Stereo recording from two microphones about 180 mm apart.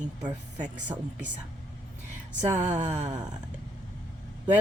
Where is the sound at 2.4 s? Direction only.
5° right (ahead or behind).